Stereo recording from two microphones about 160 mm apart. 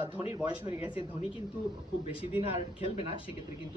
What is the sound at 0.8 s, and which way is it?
Speech, 35° left (ahead or behind).